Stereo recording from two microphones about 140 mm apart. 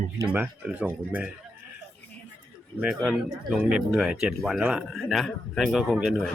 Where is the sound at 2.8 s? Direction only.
5° right (ahead or behind).